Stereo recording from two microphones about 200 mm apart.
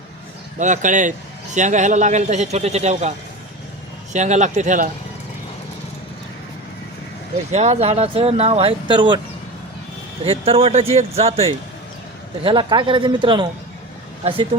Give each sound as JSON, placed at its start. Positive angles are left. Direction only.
{"t": 0.6, "sound": "a man's voice", "side_deg": -40}
{"t": 4.1, "sound": "a man's voice", "side_deg": -35}
{"t": 7.5, "sound": "speech", "side_deg": -35}
{"t": 10.2, "sound": "a man's voice", "side_deg": -30}